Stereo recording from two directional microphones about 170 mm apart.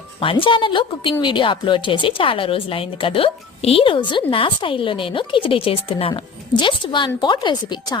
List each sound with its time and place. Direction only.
0.2 s a woman's voice: 30° left (ahead or behind)